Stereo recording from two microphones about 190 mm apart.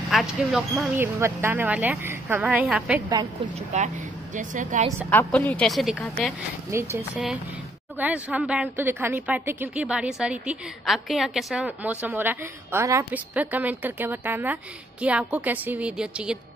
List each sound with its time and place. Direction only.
0.1 s a woman's voice: centre (ahead or behind)
3.5 s a woman's voice: 35° right (ahead or behind)
5.1 s a woman's voice: 10° left (ahead or behind)
6.7 s a woman's voice: 15° right (ahead or behind)
8.0 s a woman's voice: 5° right (ahead or behind)